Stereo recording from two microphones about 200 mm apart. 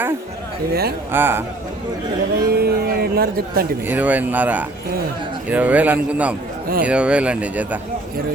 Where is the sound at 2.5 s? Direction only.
50° right (ahead or behind).